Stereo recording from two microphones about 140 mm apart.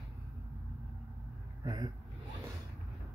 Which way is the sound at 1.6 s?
30° right (ahead or behind).